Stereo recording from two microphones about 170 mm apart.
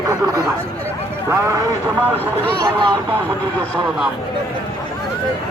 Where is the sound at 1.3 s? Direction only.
15° right (ahead or behind).